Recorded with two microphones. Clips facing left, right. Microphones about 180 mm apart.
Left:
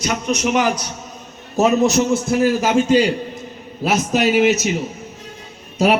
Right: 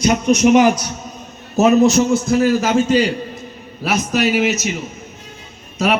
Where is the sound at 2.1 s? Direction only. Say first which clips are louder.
Right 2 dB; 25° left (ahead or behind).